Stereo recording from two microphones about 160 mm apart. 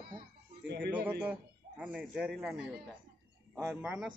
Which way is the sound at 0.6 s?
90° right.